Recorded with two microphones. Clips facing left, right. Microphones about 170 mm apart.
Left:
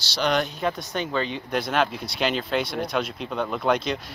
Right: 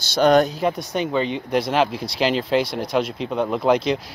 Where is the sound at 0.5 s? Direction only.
5° right (ahead or behind).